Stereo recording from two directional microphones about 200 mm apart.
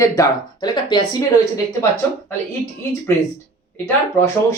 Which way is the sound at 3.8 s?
15° left (ahead or behind).